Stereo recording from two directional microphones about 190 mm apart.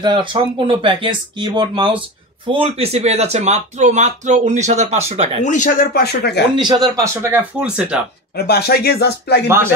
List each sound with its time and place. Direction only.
0.0 s speech: 25° right (ahead or behind)
5.4 s speech: 40° left (ahead or behind); by 6.4 s 55° left (ahead or behind)
6.5 s speech: 25° right (ahead or behind); by 8.0 s 5° right (ahead or behind)
8.4 s speech: 55° left (ahead or behind)